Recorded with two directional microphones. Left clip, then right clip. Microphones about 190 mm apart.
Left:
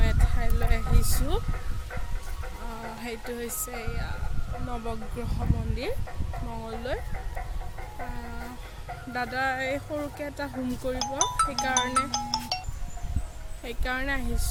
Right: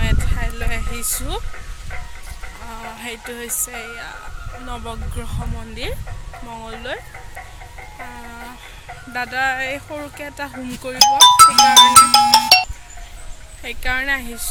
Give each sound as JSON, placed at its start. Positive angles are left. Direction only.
{"t": 0.0, "sound": "vehicle", "side_deg": 0}
{"t": 3.3, "sound": "speech", "side_deg": 0}
{"t": 6.5, "sound": "speech", "side_deg": 0}
{"t": 9.1, "sound": "speech", "side_deg": 5}
{"t": 11.2, "sound": "speech", "side_deg": -45}
{"t": 13.7, "sound": "speech", "side_deg": 5}